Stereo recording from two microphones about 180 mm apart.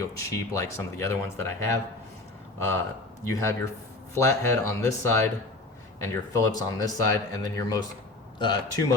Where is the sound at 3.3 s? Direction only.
15° left (ahead or behind).